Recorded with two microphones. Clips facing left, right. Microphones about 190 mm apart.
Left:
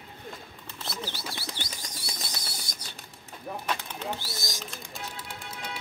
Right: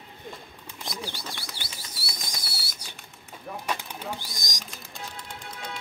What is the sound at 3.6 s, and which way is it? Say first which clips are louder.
Bird: right 1 dB; 15° right (ahead or behind).